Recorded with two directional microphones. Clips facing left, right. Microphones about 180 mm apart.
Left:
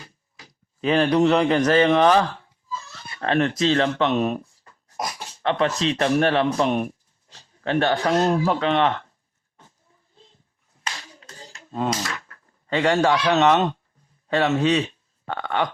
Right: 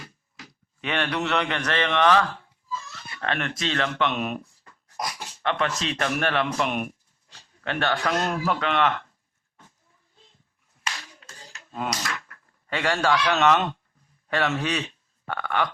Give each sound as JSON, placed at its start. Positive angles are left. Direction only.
{"t": 0.0, "sound": "speech", "side_deg": 30}
{"t": 10.8, "sound": "a sound", "side_deg": 25}
{"t": 14.3, "sound": "speech", "side_deg": 20}